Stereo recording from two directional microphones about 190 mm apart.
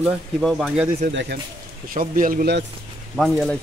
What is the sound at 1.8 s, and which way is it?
Speech, 45° right (ahead or behind).